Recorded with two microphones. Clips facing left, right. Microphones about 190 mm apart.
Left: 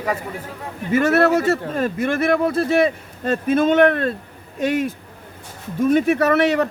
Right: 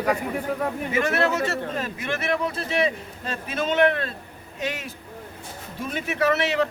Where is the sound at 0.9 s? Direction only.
50° left (ahead or behind).